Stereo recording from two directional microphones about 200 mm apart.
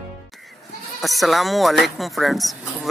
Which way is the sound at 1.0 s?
Centre (ahead or behind).